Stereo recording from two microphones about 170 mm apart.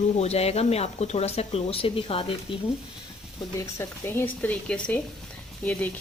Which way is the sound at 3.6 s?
15° left (ahead or behind).